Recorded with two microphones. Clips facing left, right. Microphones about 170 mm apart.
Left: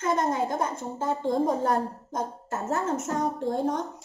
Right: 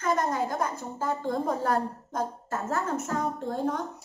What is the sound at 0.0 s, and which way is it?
A woman's voice, 25° left (ahead or behind).